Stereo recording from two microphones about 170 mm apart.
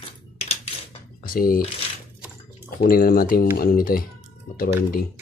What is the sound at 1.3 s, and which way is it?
Speech, 60° left (ahead or behind).